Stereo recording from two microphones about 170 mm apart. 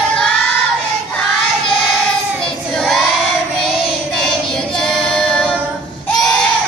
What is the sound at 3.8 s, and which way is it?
Child singing, 5° left (ahead or behind).